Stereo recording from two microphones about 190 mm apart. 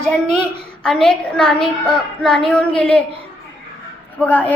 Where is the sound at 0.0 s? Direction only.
5° left (ahead or behind).